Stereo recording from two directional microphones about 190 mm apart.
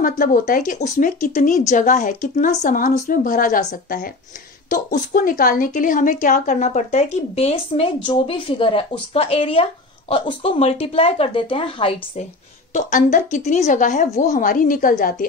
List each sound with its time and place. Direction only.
0.0 s speech: 45° left (ahead or behind); by 12.3 s 30° left (ahead or behind)
12.7 s speech: 40° left (ahead or behind)